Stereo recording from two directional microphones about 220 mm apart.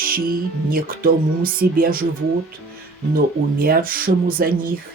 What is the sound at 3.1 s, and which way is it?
Speech, 40° right (ahead or behind).